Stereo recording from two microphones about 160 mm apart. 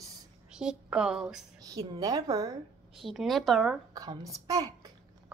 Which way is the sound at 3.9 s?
25° right (ahead or behind).